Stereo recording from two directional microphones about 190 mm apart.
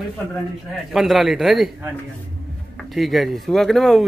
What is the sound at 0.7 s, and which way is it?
Speech, centre (ahead or behind).